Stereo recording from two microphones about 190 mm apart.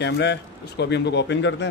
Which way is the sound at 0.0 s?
60° left (ahead or behind).